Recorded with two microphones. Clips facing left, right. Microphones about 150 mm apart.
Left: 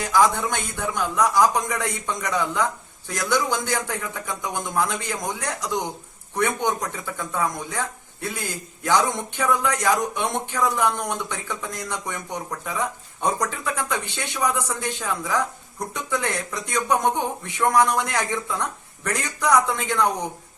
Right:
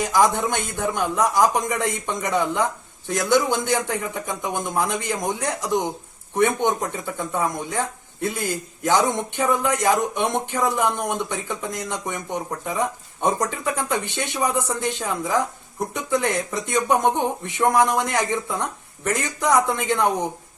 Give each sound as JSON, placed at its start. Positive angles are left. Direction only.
{"t": 0.0, "sound": "speech", "side_deg": -20}